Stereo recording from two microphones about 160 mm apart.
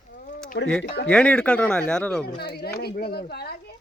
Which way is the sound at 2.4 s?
80° left.